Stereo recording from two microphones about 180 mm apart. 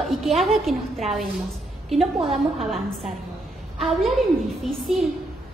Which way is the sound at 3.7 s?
Centre (ahead or behind).